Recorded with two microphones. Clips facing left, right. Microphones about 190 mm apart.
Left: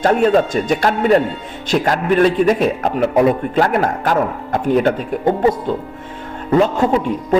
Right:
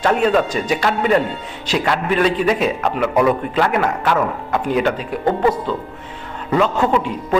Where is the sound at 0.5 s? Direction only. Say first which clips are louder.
Left 3 dB; 50° left (ahead or behind).